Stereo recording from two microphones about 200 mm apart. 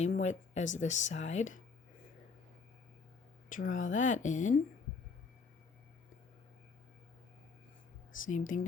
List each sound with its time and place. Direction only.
0.0 s speech: 35° left (ahead or behind)
3.5 s speech: 40° left (ahead or behind)
8.3 s speech: 40° left (ahead or behind)